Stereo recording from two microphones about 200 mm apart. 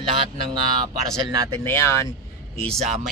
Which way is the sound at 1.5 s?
10° left (ahead or behind).